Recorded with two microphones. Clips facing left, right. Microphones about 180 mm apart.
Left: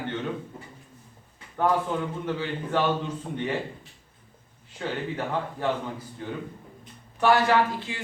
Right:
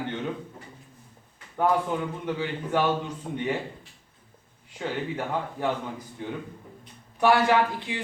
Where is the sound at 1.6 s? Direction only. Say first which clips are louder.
Even; 10° right (ahead or behind).